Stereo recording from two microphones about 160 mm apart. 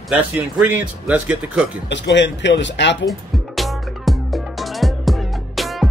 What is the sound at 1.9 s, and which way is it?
A man's voice, 90° left.